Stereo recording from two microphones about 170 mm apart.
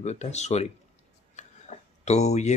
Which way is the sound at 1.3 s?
40° left (ahead or behind).